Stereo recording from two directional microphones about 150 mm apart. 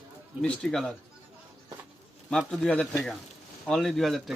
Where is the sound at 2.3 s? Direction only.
5° left (ahead or behind).